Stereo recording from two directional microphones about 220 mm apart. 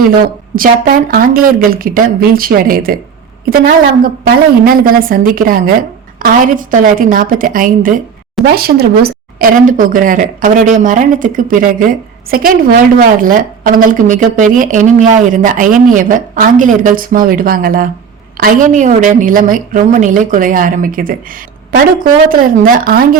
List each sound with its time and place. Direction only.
0.5 s speech: 40° right (ahead or behind)
4.0 s speech: 40° right (ahead or behind)